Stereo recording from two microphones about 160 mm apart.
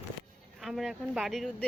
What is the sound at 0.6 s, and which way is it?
Speech, centre (ahead or behind).